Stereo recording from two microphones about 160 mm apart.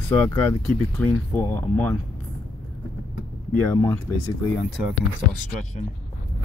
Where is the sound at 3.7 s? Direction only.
20° left (ahead or behind).